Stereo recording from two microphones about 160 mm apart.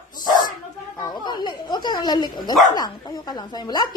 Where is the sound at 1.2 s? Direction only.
25° left (ahead or behind).